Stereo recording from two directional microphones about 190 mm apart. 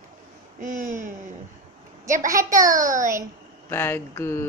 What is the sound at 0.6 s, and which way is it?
Speech, 40° right (ahead or behind).